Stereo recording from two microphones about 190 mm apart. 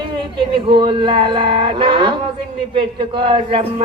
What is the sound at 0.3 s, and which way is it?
Speech, 25° right (ahead or behind).